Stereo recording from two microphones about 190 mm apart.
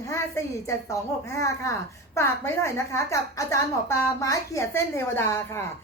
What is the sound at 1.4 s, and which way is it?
A woman's voice, 15° left (ahead or behind).